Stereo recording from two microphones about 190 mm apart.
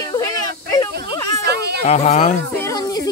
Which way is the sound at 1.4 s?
60° right (ahead or behind).